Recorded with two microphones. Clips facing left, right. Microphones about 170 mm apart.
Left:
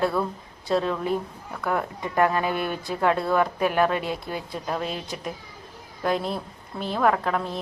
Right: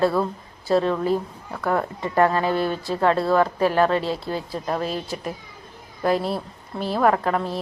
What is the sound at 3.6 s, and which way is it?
Speech, 10° left (ahead or behind).